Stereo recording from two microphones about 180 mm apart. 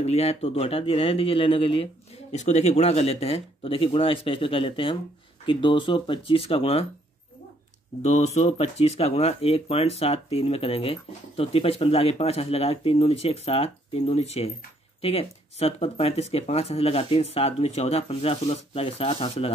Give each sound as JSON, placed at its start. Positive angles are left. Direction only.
{"t": 0.0, "sound": "speech", "side_deg": 35}
{"t": 8.0, "sound": "speech", "side_deg": 40}